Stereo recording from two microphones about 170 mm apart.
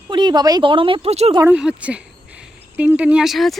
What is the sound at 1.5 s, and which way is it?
Speech, 5° right (ahead or behind).